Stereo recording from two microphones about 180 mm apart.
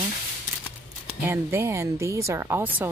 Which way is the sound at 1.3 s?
15° right (ahead or behind).